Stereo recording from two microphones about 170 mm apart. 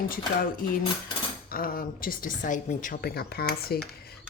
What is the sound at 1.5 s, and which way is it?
Speech, 60° left (ahead or behind).